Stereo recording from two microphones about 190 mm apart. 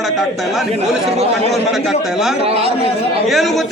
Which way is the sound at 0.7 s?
35° right (ahead or behind).